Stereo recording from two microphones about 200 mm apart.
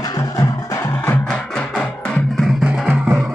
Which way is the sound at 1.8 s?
Centre (ahead or behind).